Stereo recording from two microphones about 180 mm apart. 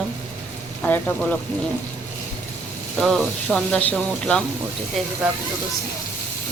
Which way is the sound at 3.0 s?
Centre (ahead or behind).